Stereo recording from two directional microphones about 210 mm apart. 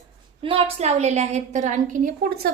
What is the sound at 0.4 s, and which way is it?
A woman's voice, 30° right (ahead or behind).